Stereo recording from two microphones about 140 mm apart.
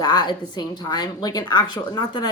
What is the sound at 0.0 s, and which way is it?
Speech, 30° left (ahead or behind).